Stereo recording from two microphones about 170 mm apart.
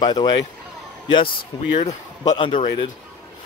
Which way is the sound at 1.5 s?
25° left (ahead or behind).